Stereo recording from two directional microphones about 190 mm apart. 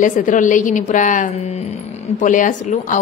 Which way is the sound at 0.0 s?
40° left (ahead or behind).